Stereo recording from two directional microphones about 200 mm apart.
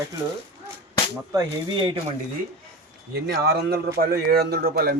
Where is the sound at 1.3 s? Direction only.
20° right (ahead or behind).